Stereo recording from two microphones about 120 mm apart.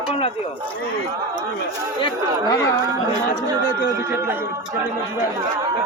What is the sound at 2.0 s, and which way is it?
Speech, 30° left (ahead or behind).